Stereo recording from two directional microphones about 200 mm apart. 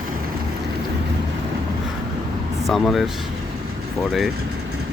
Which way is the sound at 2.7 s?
Centre (ahead or behind).